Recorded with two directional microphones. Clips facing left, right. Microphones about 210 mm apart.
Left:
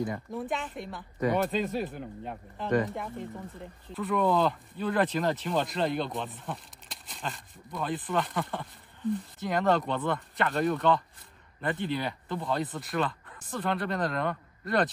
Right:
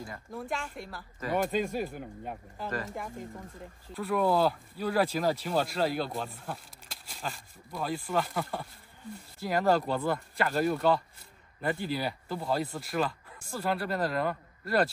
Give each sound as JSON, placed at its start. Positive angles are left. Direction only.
{"t": 0.3, "sound": "speech", "side_deg": 0}
{"t": 9.0, "sound": "speech", "side_deg": 20}
{"t": 9.4, "sound": "speech", "side_deg": -5}